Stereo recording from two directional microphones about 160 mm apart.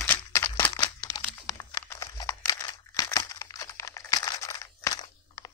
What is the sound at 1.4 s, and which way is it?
Crumpling, 20° left (ahead or behind).